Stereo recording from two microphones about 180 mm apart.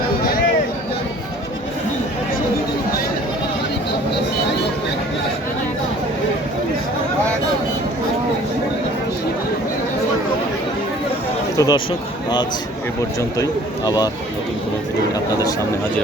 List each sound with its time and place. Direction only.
11.5 s speech: 20° left (ahead or behind)
13.4 s speech: 20° left (ahead or behind)